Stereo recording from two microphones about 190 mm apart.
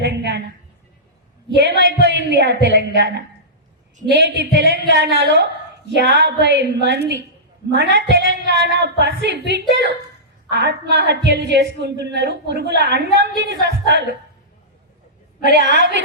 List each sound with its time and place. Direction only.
0.0 s a sound: 65° right (ahead or behind)
1.5 s a woman's voice: 70° right (ahead or behind)
15.4 s a woman's voice: 65° right (ahead or behind)